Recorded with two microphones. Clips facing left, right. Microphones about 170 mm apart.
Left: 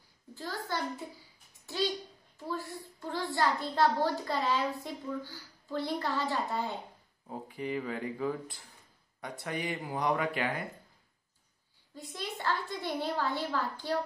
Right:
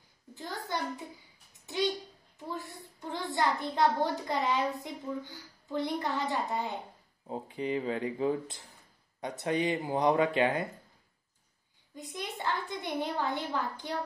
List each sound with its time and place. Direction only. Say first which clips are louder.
0.3 s a sound: even; 20° right (ahead or behind)
1.7 s a child's voice: right 2 dB; 20° right (ahead or behind)
11.9 s a child's voice: right 1 dB; 20° right (ahead or behind)